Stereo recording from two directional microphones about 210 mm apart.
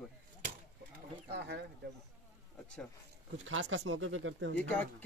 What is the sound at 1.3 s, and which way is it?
Speech, 55° right (ahead or behind).